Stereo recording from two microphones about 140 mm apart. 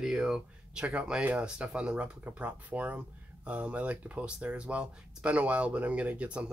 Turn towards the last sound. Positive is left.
turn(degrees=-10)  # may be behind; listen again after turning